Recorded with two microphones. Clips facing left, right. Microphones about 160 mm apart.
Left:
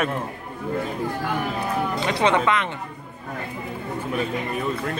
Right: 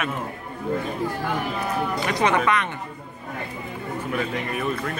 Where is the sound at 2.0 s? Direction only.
25° left (ahead or behind).